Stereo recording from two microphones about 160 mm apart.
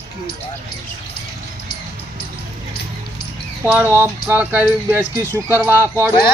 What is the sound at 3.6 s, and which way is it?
Speech, 15° right (ahead or behind).